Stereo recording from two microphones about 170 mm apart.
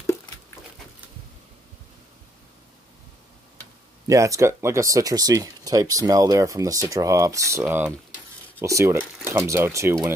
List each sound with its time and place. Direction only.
4.1 s speech: 20° right (ahead or behind)